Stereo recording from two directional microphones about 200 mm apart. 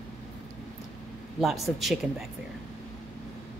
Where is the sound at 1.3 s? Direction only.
Centre (ahead or behind).